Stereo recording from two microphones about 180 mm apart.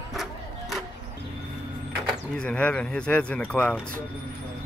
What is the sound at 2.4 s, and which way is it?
Speech, 5° left (ahead or behind).